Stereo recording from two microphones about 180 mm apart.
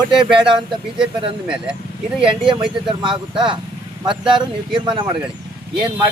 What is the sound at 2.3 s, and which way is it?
Speech, 25° right (ahead or behind).